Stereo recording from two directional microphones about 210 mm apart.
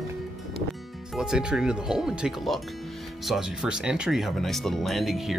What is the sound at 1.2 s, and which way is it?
Speech, 5° right (ahead or behind).